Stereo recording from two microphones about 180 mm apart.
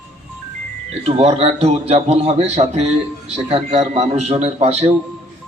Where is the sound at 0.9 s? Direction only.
35° right (ahead or behind).